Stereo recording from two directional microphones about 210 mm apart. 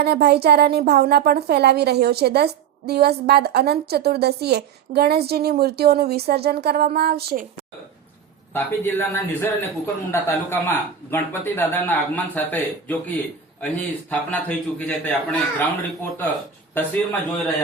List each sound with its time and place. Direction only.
0.0 s a woman's voice: 50° right (ahead or behind)
8.5 s a man's voice: 10° left (ahead or behind)
16.7 s a man's voice: 10° left (ahead or behind)